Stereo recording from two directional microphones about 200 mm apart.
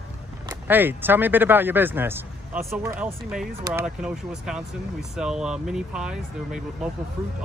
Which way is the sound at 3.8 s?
5° right (ahead or behind).